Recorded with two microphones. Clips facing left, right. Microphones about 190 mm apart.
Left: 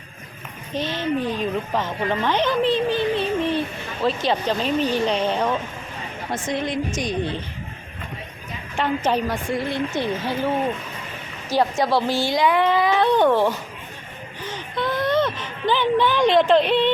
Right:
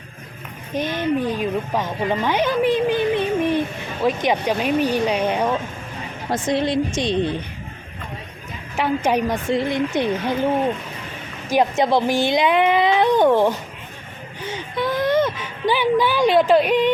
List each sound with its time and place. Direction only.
0.7 s speech: 15° right (ahead or behind)
6.3 s a woman's voice: 35° right (ahead or behind)
8.7 s speech: 10° right (ahead or behind)
14.5 s a sound: 10° right (ahead or behind)